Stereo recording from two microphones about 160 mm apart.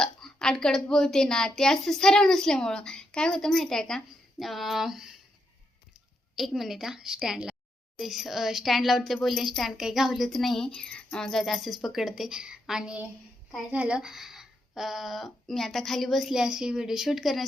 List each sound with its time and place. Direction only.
0.0 s speech: 5° left (ahead or behind)
6.3 s speech: centre (ahead or behind)